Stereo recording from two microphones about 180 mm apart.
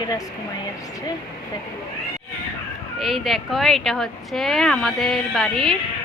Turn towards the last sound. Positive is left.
turn(degrees=5)  # may be behind; listen again after turning